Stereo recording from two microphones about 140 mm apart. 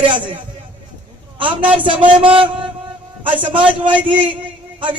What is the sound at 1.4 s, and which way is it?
Speech, 35° right (ahead or behind).